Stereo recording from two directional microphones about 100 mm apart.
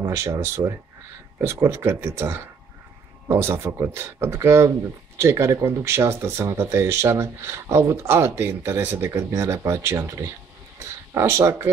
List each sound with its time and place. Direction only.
0.0 s speech: 30° right (ahead or behind)